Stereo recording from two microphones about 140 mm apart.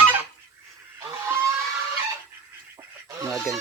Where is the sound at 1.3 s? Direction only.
20° right (ahead or behind).